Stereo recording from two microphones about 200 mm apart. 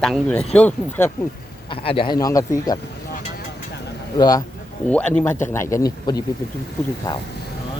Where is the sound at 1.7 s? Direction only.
25° left (ahead or behind).